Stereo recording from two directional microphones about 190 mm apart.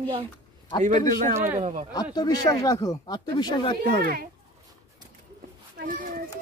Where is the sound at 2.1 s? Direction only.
20° left (ahead or behind).